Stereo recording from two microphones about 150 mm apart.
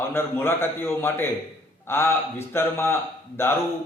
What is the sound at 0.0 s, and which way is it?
A man's voice, 15° left (ahead or behind).